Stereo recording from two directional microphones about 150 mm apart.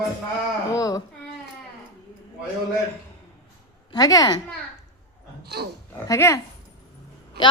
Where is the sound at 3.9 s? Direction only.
25° left (ahead or behind).